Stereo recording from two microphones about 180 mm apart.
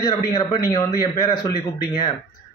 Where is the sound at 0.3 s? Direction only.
20° left (ahead or behind).